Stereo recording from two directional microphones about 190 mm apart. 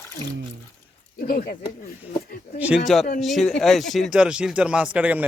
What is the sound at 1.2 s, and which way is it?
Speech, 50° left (ahead or behind).